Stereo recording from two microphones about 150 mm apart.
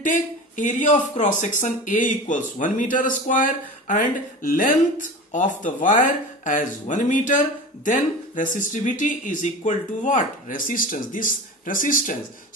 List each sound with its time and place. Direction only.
0.0 s speech: 60° left (ahead or behind)